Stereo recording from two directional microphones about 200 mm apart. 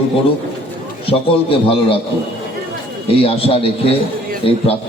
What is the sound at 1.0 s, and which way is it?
Speech, 30° left (ahead or behind).